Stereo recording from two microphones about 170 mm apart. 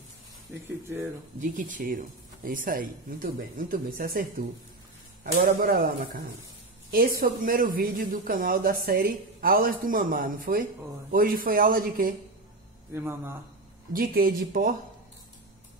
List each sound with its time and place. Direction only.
0.8 s a man's voice: 15° right (ahead or behind)
1.4 s speech: 50° right (ahead or behind)
12.9 s a man's voice: 15° right (ahead or behind)
13.9 s speech: 60° right (ahead or behind)